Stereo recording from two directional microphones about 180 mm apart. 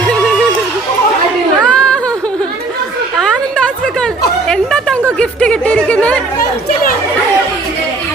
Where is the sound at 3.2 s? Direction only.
5° left (ahead or behind).